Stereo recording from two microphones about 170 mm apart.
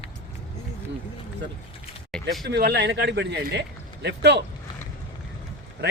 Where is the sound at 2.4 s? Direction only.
75° right (ahead or behind).